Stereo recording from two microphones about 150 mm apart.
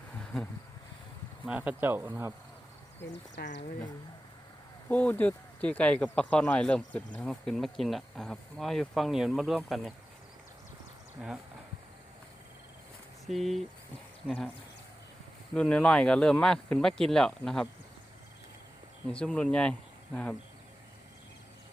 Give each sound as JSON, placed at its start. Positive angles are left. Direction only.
{"t": 1.5, "sound": "speech", "side_deg": -10}
{"t": 3.4, "sound": "speech", "side_deg": 90}
{"t": 4.9, "sound": "speech", "side_deg": 10}
{"t": 11.2, "sound": "speech", "side_deg": 0}
{"t": 13.2, "sound": "speech", "side_deg": 0}
{"t": 15.5, "sound": "speech", "side_deg": 5}
{"t": 19.0, "sound": "speech", "side_deg": 5}